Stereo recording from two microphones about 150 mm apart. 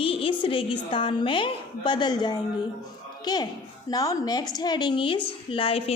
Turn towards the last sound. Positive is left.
turn(degrees=40)  # may be behind; listen again after turning